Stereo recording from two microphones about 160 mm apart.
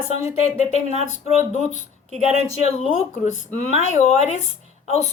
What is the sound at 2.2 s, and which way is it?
A woman's voice, 40° left (ahead or behind).